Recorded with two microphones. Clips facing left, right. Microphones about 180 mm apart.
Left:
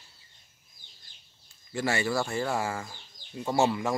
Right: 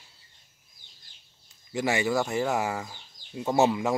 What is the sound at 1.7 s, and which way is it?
Speech, 15° right (ahead or behind).